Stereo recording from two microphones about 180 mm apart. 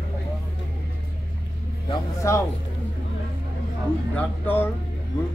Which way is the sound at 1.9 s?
15° left (ahead or behind).